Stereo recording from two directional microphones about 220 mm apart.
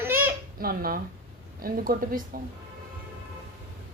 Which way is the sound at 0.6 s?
40° right (ahead or behind).